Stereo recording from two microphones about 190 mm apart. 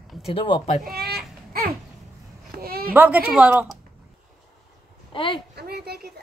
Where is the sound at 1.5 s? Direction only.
50° right (ahead or behind).